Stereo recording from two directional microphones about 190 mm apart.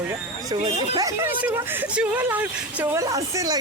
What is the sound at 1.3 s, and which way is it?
A woman's voice, 10° right (ahead or behind).